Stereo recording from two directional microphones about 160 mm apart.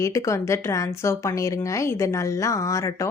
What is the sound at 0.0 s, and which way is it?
A woman's voice, 20° left (ahead or behind).